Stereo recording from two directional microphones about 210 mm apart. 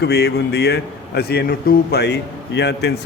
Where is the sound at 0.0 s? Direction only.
50° left (ahead or behind).